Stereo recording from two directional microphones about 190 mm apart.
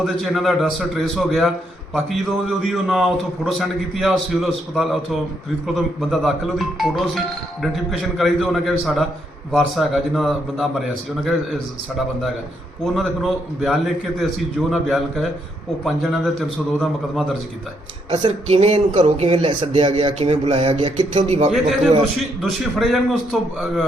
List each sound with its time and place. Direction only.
0.0 s a man's voice: centre (ahead or behind)
18.2 s a man's voice: 30° right (ahead or behind)
21.1 s a man's voice: 35° right (ahead or behind)
22.2 s a man's voice: centre (ahead or behind)